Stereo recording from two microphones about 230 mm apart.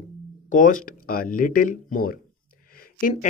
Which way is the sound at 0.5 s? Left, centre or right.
Left.